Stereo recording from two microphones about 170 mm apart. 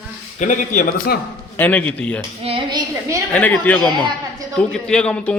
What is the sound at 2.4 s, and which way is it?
Speech, 30° right (ahead or behind).